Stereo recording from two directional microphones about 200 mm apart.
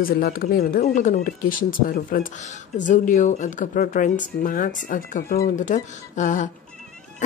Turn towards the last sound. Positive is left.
turn(degrees=40)  # may be behind; listen again after turning